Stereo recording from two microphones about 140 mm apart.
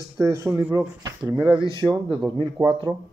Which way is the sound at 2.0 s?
35° right (ahead or behind).